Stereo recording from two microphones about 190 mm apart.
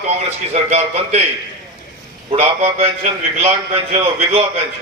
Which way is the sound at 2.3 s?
30° right (ahead or behind).